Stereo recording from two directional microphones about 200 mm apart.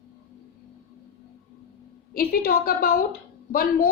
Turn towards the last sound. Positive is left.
turn(degrees=45)  # may be behind; listen again after turning